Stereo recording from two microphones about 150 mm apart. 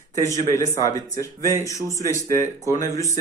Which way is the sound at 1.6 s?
20° left (ahead or behind).